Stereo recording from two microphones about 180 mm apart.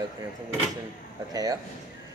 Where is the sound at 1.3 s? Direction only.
20° right (ahead or behind).